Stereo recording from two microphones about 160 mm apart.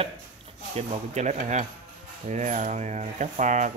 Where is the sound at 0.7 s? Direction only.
45° right (ahead or behind).